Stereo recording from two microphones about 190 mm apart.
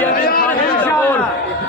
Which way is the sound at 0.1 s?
50° left (ahead or behind).